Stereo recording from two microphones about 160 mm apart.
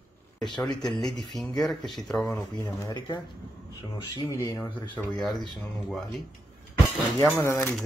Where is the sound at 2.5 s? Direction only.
20° left (ahead or behind).